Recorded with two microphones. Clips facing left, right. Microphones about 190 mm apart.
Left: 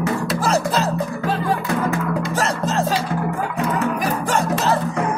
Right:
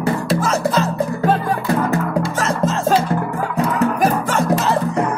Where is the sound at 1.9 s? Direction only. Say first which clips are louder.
Right 3 dB; 35° right (ahead or behind).